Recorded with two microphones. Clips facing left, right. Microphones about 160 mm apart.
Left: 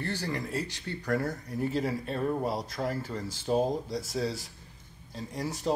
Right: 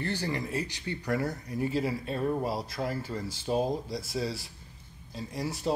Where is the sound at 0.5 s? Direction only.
15° right (ahead or behind).